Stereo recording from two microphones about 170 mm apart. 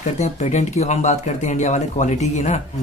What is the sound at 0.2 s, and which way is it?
Speech, 40° left (ahead or behind).